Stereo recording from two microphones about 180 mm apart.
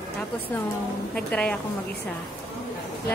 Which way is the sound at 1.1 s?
5° left (ahead or behind).